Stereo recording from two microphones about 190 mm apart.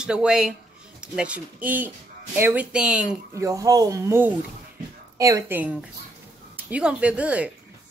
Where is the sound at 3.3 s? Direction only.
15° right (ahead or behind).